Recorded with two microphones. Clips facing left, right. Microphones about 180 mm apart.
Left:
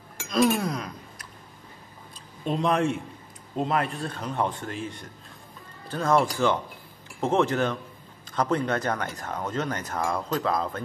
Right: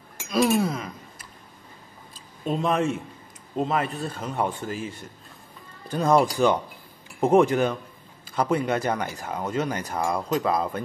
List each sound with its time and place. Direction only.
0.3 s speech: 5° right (ahead or behind)
2.4 s speech: centre (ahead or behind)
5.9 s speech: 15° right (ahead or behind)